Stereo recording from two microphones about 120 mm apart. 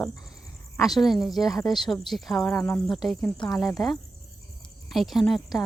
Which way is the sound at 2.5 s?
20° left (ahead or behind).